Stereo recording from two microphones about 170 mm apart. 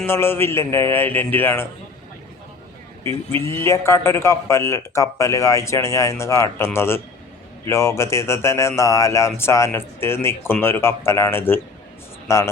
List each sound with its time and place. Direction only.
0.0 s speech: 15° left (ahead or behind)
3.4 s speech: 15° left (ahead or behind)